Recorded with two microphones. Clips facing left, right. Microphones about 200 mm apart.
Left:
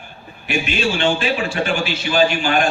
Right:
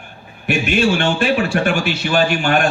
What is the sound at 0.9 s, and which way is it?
A man's voice, 55° right (ahead or behind).